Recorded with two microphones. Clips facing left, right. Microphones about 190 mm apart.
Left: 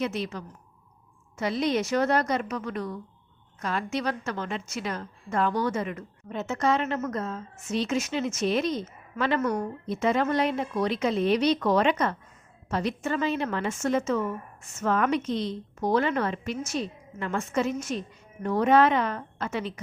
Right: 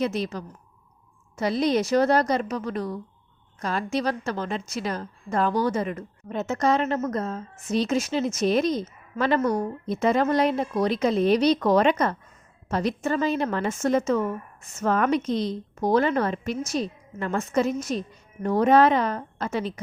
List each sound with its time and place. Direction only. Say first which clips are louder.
0.0 s a woman's voice: right 3 dB; 35° right (ahead or behind)